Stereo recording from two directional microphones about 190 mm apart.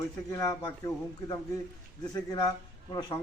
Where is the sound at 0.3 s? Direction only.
20° left (ahead or behind).